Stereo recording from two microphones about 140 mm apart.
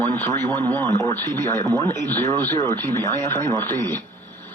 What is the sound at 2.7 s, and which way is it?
Speech, 15° left (ahead or behind).